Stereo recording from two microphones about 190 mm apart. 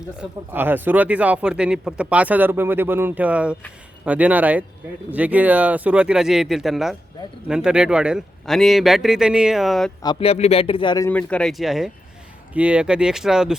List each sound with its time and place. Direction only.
0.2 s a man's voice: 10° right (ahead or behind)
10.0 s a man's voice: 25° left (ahead or behind)
11.1 s a man's voice: 5° left (ahead or behind)